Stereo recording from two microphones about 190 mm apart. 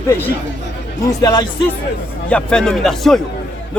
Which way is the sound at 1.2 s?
20° left (ahead or behind).